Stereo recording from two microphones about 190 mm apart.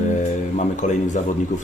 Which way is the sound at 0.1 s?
40° left (ahead or behind).